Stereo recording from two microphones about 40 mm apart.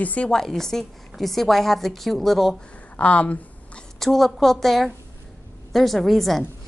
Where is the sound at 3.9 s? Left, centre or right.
Centre.